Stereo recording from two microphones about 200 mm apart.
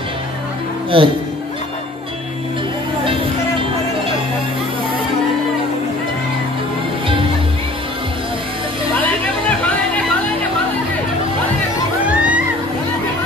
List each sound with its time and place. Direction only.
0.9 s speech: 25° right (ahead or behind)
12.1 s music: 5° right (ahead or behind)